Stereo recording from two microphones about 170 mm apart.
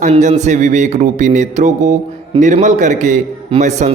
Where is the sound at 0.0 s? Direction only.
45° right (ahead or behind).